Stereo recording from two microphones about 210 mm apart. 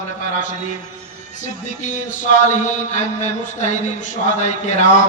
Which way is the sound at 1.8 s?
35° left (ahead or behind).